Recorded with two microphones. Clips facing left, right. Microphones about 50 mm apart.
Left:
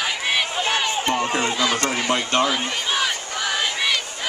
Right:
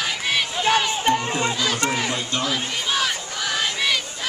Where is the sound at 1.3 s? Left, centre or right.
Left.